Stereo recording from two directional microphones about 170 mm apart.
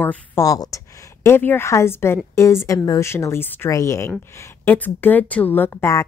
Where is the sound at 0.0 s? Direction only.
10° left (ahead or behind).